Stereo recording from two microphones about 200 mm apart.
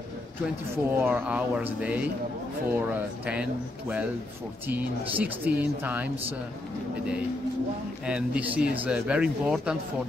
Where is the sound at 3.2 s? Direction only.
5° right (ahead or behind).